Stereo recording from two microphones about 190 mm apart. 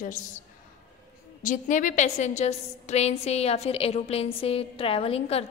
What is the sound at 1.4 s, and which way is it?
A woman's voice, 45° left (ahead or behind).